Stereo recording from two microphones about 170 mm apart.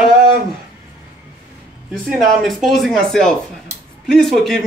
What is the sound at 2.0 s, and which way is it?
Speech, centre (ahead or behind).